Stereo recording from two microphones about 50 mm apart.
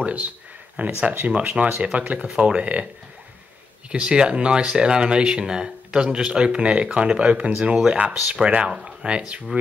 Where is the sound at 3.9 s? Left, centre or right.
Right.